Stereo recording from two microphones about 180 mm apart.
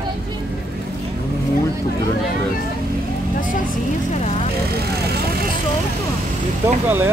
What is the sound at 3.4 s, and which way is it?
Speech, 45° left (ahead or behind).